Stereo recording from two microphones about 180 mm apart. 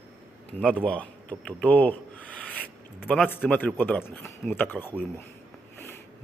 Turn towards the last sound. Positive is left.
turn(degrees=10)  # may be behind; listen again after turning